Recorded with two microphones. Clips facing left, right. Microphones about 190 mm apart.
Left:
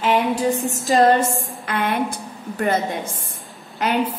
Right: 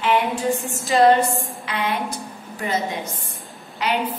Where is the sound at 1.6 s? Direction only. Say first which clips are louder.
Left 4 dB; 55° left (ahead or behind).